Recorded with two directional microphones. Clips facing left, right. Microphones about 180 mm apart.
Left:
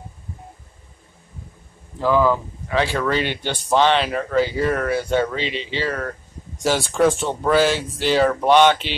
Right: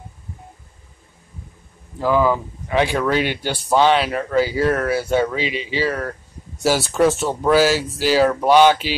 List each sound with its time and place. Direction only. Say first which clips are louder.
2.0 s speech: even; 10° right (ahead or behind)